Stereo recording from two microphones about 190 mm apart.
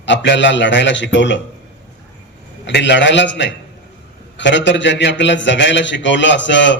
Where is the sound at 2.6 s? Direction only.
70° left (ahead or behind).